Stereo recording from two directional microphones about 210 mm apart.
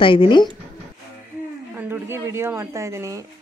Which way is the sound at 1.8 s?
10° right (ahead or behind).